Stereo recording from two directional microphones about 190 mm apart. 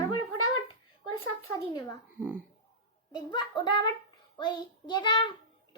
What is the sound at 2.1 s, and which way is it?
Speech, 10° right (ahead or behind).